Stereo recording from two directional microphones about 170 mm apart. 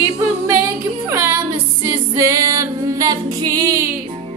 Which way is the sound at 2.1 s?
20° right (ahead or behind).